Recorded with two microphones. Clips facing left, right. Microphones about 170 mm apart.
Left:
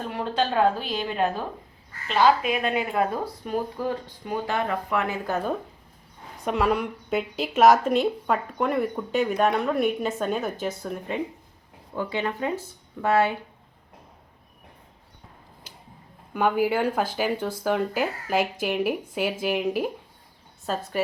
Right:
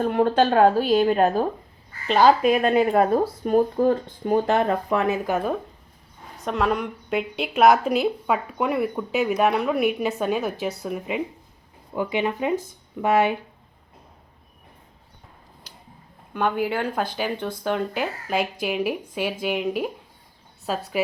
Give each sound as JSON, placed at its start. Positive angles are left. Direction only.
{"t": 0.0, "sound": "speech", "side_deg": -50}
{"t": 4.9, "sound": "speech", "side_deg": -20}
{"t": 6.4, "sound": "a woman's voice", "side_deg": 10}
{"t": 16.3, "sound": "a woman's voice", "side_deg": 5}